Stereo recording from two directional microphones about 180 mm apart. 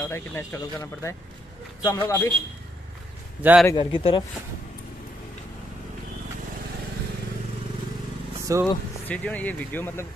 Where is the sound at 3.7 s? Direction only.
25° left (ahead or behind).